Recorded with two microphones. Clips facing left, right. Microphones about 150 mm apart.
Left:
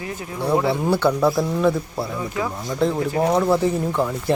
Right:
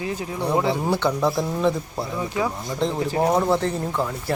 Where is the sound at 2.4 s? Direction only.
20° right (ahead or behind).